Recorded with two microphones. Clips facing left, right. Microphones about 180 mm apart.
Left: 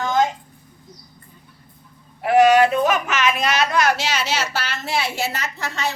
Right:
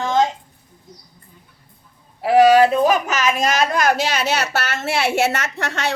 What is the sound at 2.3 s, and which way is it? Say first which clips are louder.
A woman's voice: right 2 dB; 35° right (ahead or behind).